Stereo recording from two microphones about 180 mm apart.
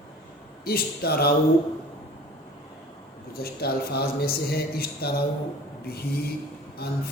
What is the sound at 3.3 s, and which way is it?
A man's voice, 60° left (ahead or behind).